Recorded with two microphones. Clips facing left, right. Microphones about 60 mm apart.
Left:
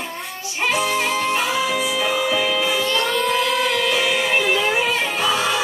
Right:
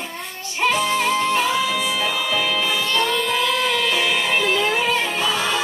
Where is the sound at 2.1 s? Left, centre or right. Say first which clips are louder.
Left 2 dB; left.